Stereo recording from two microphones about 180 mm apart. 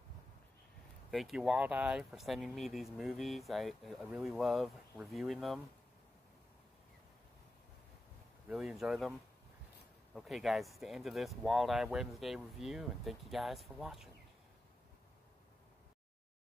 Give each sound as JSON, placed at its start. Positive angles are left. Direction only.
{"t": 1.1, "sound": "speech", "side_deg": 0}
{"t": 8.5, "sound": "speech", "side_deg": 0}
{"t": 10.1, "sound": "speech", "side_deg": 0}